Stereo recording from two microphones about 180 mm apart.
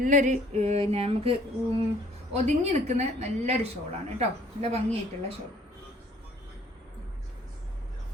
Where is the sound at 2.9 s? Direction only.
35° right (ahead or behind).